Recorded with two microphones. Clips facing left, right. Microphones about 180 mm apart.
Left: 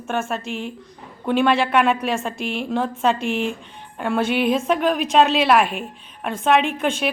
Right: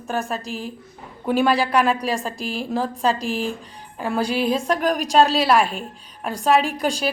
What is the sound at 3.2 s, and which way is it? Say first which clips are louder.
Speech: left 2 dB; 35° right (ahead or behind).